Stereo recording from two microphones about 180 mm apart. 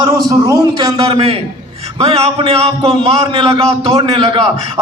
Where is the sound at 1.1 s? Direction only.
35° right (ahead or behind).